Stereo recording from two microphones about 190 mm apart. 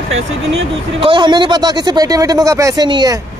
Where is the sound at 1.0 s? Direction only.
25° right (ahead or behind).